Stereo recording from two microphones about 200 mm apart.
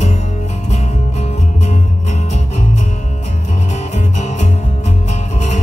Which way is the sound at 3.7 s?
35° left (ahead or behind).